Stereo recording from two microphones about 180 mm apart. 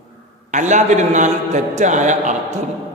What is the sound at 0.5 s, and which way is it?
A man's voice, 40° right (ahead or behind).